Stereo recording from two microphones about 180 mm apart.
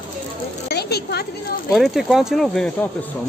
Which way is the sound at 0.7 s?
65° left (ahead or behind).